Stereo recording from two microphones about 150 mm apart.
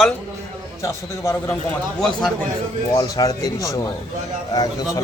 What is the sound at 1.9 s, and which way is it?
Speech, 5° left (ahead or behind).